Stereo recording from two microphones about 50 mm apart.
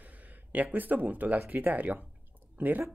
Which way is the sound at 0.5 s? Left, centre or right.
Right.